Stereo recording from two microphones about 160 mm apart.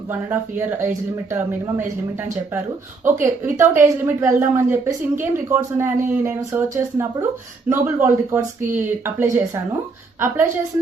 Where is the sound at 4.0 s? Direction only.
15° right (ahead or behind).